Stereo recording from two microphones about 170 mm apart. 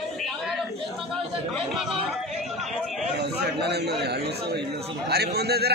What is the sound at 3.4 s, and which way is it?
A man's voice, 75° right (ahead or behind).